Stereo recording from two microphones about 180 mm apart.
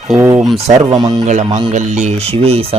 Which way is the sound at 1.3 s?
40° right (ahead or behind).